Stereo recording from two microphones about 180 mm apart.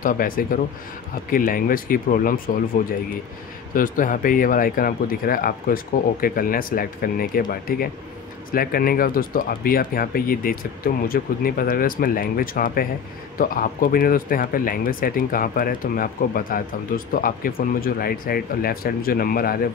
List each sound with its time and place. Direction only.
0.0 s speech: 50° left (ahead or behind)
3.7 s speech: 50° left (ahead or behind)